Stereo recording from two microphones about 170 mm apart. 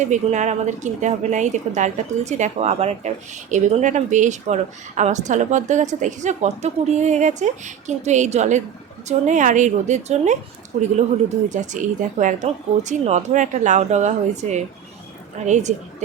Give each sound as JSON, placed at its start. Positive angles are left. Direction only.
{"t": 0.0, "sound": "a woman's voice", "side_deg": -45}
{"t": 11.4, "sound": "a woman's voice", "side_deg": -45}